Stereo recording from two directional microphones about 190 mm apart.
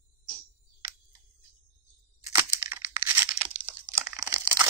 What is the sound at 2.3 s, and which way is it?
Tearing, 10° right (ahead or behind).